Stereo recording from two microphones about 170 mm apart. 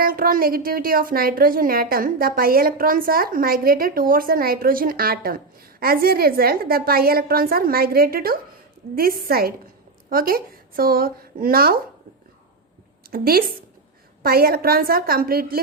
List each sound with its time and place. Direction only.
0.0 s speech: 55° right (ahead or behind)
13.1 s a woman's voice: 60° right (ahead or behind)